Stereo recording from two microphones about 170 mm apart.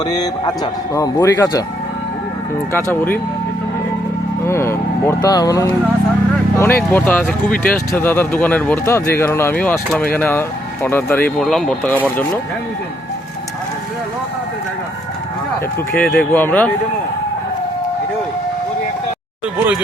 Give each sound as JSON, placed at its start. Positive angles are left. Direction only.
{"t": 0.0, "sound": "speech", "side_deg": 25}
{"t": 2.7, "sound": "speech", "side_deg": 15}
{"t": 4.4, "sound": "speech", "side_deg": 15}
{"t": 15.9, "sound": "speech", "side_deg": 5}